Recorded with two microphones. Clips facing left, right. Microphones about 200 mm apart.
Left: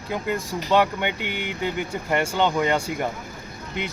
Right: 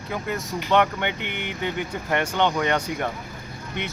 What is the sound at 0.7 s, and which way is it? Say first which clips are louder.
Speech: left 1 dB; 10° left (ahead or behind).